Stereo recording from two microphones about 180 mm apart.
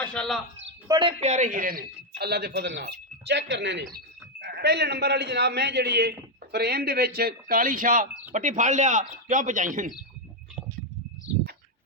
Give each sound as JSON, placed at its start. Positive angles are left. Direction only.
{"t": 0.0, "sound": "speech", "side_deg": 5}
{"t": 0.9, "sound": "a man's voice", "side_deg": -25}
{"t": 1.2, "sound": "a man's voice", "side_deg": -40}